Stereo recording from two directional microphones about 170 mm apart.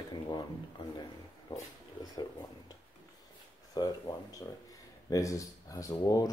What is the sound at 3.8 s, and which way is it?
Speech, 25° left (ahead or behind).